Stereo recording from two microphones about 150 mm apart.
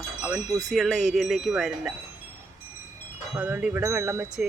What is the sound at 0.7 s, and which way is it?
Speech, centre (ahead or behind).